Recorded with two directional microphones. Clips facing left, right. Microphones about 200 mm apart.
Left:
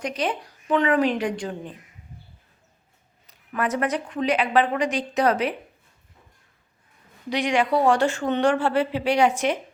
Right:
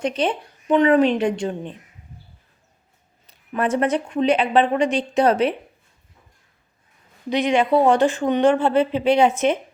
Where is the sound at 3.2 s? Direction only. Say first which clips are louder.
Right 4 dB; 30° right (ahead or behind).